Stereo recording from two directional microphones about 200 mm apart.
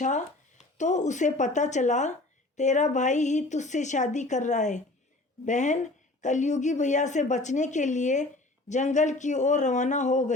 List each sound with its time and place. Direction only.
0.0 s speech: 35° left (ahead or behind)